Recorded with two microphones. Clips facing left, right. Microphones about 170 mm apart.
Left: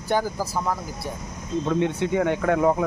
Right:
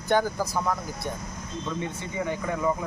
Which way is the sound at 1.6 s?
70° left (ahead or behind).